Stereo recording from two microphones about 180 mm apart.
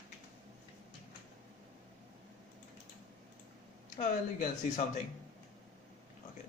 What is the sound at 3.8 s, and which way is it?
Speech, 45° left (ahead or behind).